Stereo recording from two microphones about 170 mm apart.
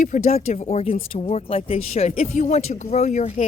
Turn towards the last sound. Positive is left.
turn(degrees=45)  # may be behind; listen again after turning